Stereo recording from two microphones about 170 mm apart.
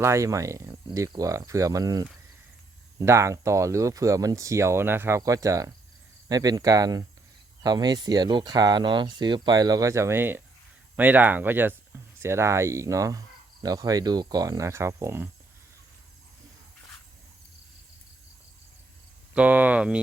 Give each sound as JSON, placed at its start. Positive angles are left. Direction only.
{"t": 0.0, "sound": "speech", "side_deg": -15}
{"t": 19.3, "sound": "speech", "side_deg": -10}